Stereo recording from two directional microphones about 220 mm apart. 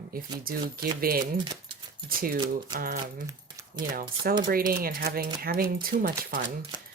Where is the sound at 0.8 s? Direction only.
40° right (ahead or behind).